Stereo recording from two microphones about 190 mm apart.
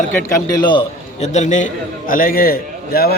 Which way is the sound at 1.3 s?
40° left (ahead or behind).